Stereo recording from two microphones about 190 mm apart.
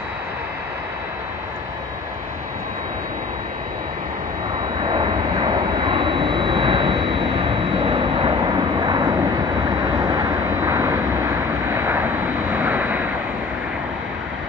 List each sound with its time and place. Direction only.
4.8 s vehicle: 25° right (ahead or behind); by 13.1 s 10° right (ahead or behind)